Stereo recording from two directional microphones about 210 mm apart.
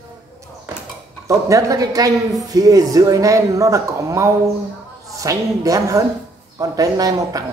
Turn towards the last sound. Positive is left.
turn(degrees=-15)  # may be behind; listen again after turning